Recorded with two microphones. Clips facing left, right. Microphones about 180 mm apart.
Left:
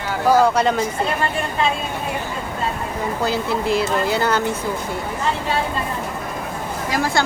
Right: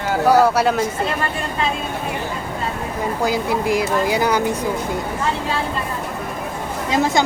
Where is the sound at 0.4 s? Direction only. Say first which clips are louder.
Right 1 dB; 5° right (ahead or behind).